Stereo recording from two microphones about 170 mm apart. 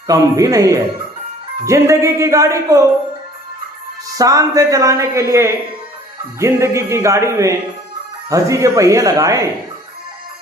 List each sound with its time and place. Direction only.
0.1 s speech: 20° right (ahead or behind)
1.6 s music: 15° right (ahead or behind)
4.1 s speech: 20° right (ahead or behind)
6.4 s music: 15° right (ahead or behind)
8.3 s speech: 20° right (ahead or behind)